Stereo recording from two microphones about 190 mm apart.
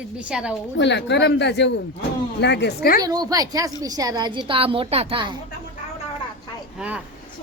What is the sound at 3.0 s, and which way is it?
A woman's voice, 20° right (ahead or behind).